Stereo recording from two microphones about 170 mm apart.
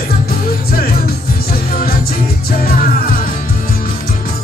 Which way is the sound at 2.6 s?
60° left (ahead or behind).